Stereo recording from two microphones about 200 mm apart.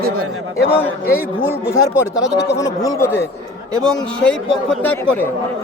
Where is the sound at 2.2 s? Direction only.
60° left (ahead or behind).